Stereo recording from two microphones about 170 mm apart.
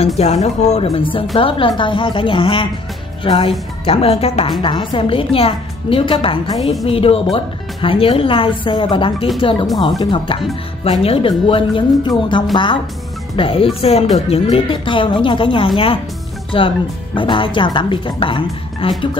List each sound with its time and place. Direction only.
0.2 s speech: 40° left (ahead or behind)